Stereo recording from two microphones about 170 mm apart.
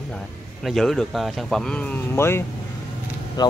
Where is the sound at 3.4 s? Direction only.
25° left (ahead or behind).